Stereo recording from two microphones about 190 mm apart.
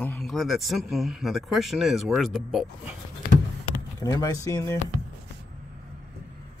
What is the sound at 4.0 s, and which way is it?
Speech, 20° left (ahead or behind).